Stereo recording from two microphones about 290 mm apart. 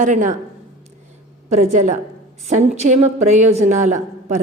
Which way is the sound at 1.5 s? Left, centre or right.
Right.